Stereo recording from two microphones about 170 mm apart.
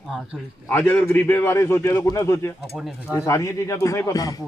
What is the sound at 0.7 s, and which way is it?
A man's voice, 10° left (ahead or behind).